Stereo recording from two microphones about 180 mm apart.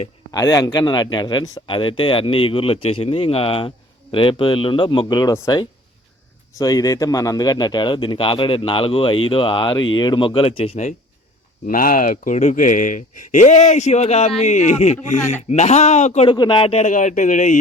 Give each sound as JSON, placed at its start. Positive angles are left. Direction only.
{"t": 0.3, "sound": "speech", "side_deg": 20}
{"t": 11.6, "sound": "speech", "side_deg": 50}
{"t": 16.3, "sound": "speech", "side_deg": 25}